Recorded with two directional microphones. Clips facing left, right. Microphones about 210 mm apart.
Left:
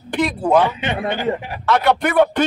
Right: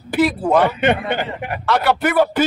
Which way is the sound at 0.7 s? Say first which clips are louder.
Right 4 dB; 55° right (ahead or behind).